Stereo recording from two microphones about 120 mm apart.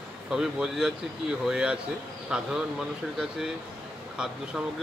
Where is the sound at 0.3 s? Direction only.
5° right (ahead or behind).